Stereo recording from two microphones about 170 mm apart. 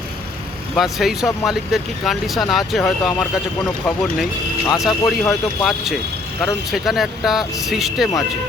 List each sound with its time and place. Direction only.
0.8 s speech: centre (ahead or behind)